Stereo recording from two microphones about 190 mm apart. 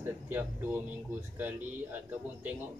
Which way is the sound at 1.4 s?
10° right (ahead or behind).